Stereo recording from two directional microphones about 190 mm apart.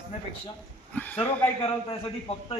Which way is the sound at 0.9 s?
5° left (ahead or behind).